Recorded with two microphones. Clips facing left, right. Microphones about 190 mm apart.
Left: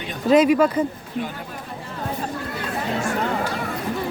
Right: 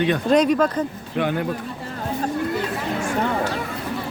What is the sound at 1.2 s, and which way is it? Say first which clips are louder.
Speech: right 10 dB; 75° right (ahead or behind).